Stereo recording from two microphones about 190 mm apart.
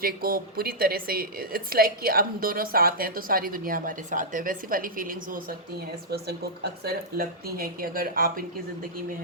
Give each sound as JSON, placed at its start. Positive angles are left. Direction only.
{"t": 0.0, "sound": "a woman's voice", "side_deg": -50}